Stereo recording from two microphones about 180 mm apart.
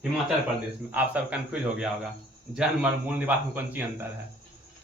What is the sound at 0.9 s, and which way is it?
Speech, 10° right (ahead or behind).